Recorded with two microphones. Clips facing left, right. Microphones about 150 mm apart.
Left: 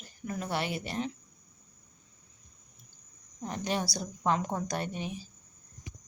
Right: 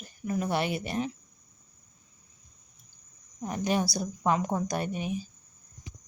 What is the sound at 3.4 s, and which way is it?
Speech, 10° right (ahead or behind).